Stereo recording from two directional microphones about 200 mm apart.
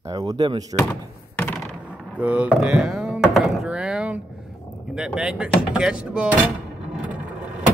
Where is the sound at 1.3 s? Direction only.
10° left (ahead or behind).